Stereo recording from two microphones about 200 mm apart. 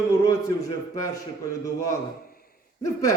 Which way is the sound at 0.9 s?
15° left (ahead or behind).